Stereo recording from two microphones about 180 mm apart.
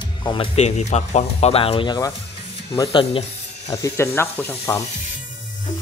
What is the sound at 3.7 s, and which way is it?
Speech, 15° left (ahead or behind).